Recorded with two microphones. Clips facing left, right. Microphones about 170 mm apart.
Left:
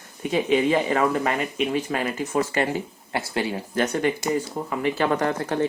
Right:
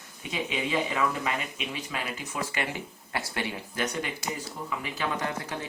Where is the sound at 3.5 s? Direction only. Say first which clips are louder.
Left 7 dB; 50° left (ahead or behind).